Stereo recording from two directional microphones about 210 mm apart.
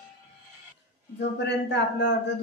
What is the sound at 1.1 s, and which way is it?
Speech, 55° left (ahead or behind).